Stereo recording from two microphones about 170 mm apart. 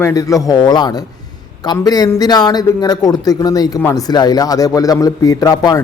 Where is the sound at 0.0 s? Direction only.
20° left (ahead or behind).